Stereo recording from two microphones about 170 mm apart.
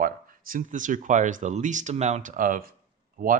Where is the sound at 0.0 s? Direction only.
55° right (ahead or behind).